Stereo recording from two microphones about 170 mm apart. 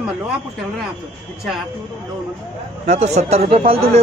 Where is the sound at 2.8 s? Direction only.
40° right (ahead or behind).